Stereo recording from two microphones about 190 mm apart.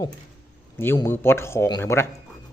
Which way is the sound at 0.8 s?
15° left (ahead or behind).